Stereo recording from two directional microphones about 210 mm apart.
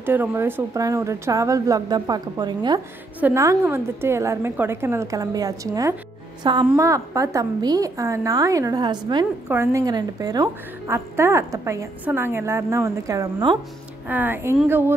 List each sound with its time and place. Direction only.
0.0 s a woman's voice: 10° right (ahead or behind)